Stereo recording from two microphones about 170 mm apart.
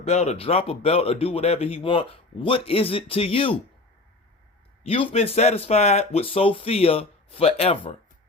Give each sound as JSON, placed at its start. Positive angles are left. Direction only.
{"t": 0.0, "sound": "speech", "side_deg": 40}
{"t": 4.8, "sound": "speech", "side_deg": 35}